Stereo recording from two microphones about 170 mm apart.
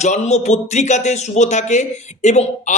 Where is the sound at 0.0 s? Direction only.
40° left (ahead or behind).